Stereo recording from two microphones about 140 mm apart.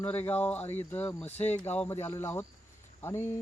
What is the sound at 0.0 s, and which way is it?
Speech, 15° left (ahead or behind).